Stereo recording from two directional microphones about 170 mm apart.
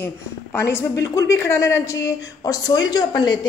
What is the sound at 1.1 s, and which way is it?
A woman's voice, 15° left (ahead or behind).